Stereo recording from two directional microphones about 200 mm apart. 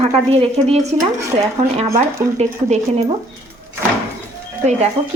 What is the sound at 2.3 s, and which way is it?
Speech, 35° right (ahead or behind).